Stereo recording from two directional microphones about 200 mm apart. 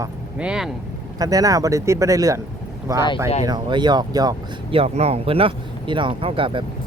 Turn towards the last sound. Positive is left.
turn(degrees=-25)  # may be behind; listen again after turning